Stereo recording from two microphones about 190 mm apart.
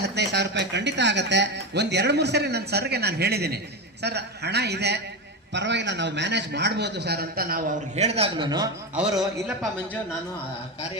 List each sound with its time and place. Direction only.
0.0 s a man's voice: 65° right (ahead or behind)
7.9 s a man's voice: 35° right (ahead or behind)